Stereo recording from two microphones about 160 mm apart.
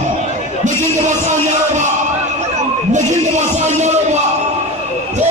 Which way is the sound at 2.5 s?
45° right (ahead or behind).